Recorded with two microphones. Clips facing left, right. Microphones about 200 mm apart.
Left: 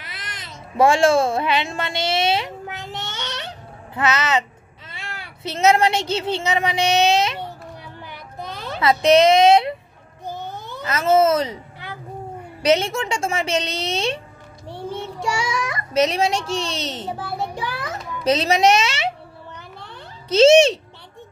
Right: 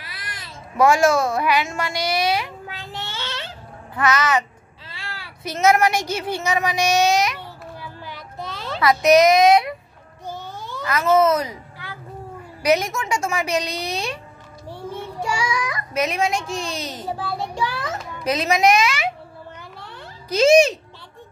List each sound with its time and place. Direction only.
0.0 s baby cry: 20° left (ahead or behind)
3.9 s a child's voice: 20° left (ahead or behind)
8.0 s child singing: 55° left (ahead or behind)
8.6 s a sound: 20° left (ahead or behind)
9.0 s a woman's voice: 30° left (ahead or behind)
10.4 s a sound: 55° left (ahead or behind)
10.8 s a sound: 25° left (ahead or behind)
12.6 s a woman's voice: 30° left (ahead or behind)
14.8 s child singing: 25° left (ahead or behind)
15.4 s a child's voice: 30° left (ahead or behind)
18.2 s a woman's voice: 30° left (ahead or behind)
19.8 s a sound: 25° left (ahead or behind)